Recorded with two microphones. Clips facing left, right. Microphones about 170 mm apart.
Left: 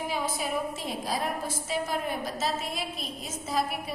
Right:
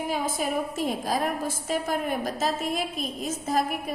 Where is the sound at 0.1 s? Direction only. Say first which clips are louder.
Right 4 dB; 50° right (ahead or behind).